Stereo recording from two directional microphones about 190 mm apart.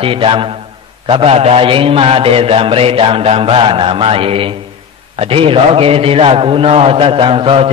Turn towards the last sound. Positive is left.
turn(degrees=-30)  # may be behind; listen again after turning